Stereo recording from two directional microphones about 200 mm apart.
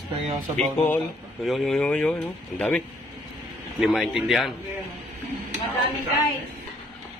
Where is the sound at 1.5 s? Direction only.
Centre (ahead or behind).